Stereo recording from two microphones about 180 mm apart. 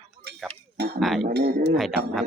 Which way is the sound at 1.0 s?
Centre (ahead or behind).